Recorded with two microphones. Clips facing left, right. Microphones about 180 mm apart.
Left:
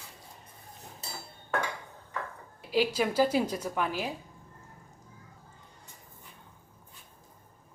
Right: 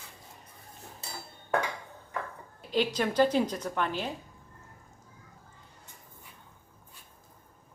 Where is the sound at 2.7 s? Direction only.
10° left (ahead or behind).